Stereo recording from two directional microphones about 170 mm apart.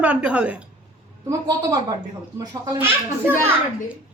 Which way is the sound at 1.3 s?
20° right (ahead or behind).